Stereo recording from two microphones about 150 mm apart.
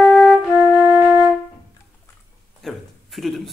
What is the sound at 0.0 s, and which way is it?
Flute, centre (ahead or behind).